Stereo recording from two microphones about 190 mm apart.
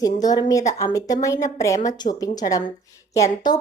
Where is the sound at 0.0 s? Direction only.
20° left (ahead or behind).